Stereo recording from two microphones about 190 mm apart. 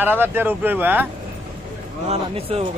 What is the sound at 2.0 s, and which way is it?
Speech, 30° right (ahead or behind).